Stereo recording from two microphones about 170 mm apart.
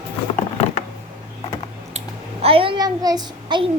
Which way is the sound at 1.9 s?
35° right (ahead or behind).